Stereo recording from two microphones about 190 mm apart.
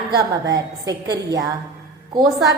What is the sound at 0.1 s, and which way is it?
A woman's voice, 20° right (ahead or behind).